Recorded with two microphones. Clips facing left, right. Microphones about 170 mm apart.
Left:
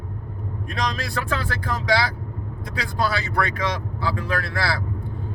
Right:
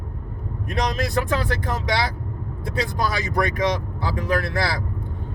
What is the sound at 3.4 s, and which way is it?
Speech, 20° right (ahead or behind).